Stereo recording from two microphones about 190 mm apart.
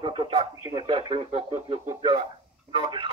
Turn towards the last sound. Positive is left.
turn(degrees=-25)  # may be behind; listen again after turning